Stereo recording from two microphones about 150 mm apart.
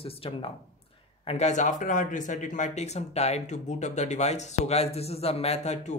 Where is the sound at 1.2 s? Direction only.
50° left (ahead or behind).